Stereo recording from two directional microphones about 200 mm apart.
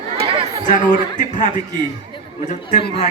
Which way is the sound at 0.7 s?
40° left (ahead or behind).